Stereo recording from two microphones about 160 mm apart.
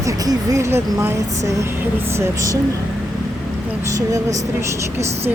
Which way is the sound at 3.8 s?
20° right (ahead or behind).